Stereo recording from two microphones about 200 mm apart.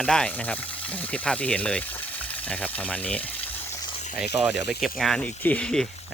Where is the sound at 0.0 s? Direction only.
5° left (ahead or behind).